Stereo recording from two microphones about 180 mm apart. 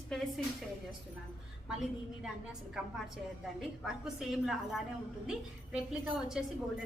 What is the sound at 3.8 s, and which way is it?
Speech, centre (ahead or behind).